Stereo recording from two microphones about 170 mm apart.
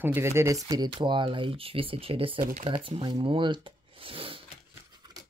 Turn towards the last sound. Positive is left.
turn(degrees=-30)  # may be behind; listen again after turning